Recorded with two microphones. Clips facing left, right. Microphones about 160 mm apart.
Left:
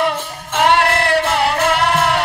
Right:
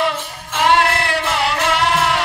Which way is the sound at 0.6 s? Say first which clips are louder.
Left 1 dB; 60° left (ahead or behind).